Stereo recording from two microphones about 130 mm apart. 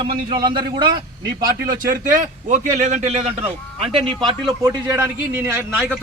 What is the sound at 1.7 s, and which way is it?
Speech, 90° right.